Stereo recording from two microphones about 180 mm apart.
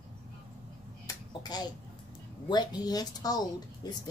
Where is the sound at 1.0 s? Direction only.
20° left (ahead or behind).